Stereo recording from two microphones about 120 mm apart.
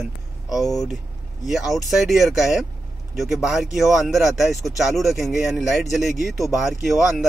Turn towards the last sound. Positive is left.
turn(degrees=0)  # may be behind; listen again after turning